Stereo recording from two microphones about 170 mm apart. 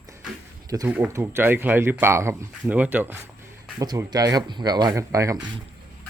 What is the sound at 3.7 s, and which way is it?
Speech, 25° right (ahead or behind).